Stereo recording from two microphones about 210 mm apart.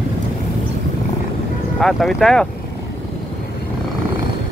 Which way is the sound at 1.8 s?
Centre (ahead or behind).